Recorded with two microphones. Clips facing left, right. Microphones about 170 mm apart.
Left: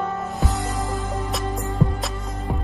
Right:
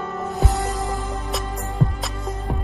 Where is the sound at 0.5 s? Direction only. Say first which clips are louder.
Right 1 dB; centre (ahead or behind).